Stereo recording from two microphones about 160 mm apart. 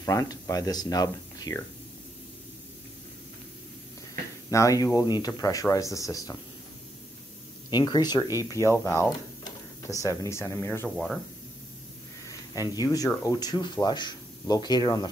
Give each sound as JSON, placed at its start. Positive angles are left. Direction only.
{"t": 0.0, "sound": "speech", "side_deg": 20}
{"t": 4.5, "sound": "speech", "side_deg": 20}
{"t": 7.7, "sound": "speech", "side_deg": 25}
{"t": 12.3, "sound": "speech", "side_deg": 20}